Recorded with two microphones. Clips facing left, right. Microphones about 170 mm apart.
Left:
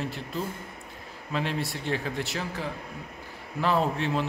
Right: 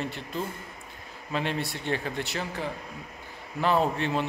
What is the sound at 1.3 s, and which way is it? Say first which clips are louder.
Speech: even; centre (ahead or behind).